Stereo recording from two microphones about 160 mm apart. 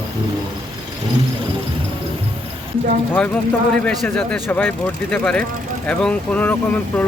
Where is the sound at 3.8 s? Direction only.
5° left (ahead or behind).